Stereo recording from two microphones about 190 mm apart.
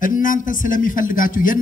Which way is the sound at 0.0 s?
45° left (ahead or behind).